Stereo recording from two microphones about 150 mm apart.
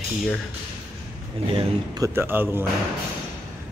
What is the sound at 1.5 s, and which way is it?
Speech, 25° right (ahead or behind).